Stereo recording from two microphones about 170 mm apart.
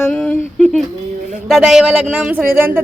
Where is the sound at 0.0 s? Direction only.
5° left (ahead or behind).